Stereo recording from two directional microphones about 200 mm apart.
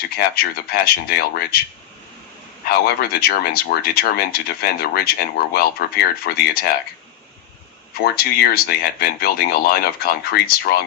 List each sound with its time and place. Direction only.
0.2 s speech: 50° left (ahead or behind)
2.6 s speech: 50° left (ahead or behind)
8.0 s speech: 50° left (ahead or behind)